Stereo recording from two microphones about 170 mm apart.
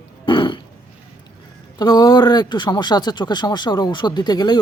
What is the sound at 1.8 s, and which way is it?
Speech, 25° left (ahead or behind).